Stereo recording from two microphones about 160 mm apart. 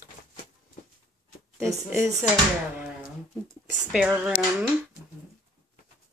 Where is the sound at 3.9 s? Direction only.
5° right (ahead or behind).